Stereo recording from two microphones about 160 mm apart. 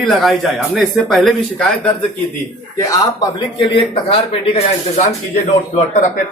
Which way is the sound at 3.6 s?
35° left (ahead or behind).